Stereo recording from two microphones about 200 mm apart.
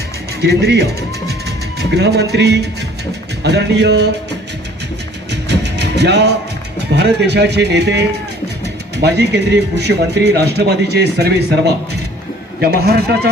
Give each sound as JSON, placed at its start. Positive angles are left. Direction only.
{"t": 0.4, "sound": "speech", "side_deg": -55}
{"t": 5.3, "sound": "music", "side_deg": -55}
{"t": 6.7, "sound": "a man's voice", "side_deg": -55}